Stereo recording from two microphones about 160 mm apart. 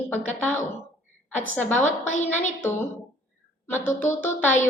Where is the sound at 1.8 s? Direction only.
50° left (ahead or behind).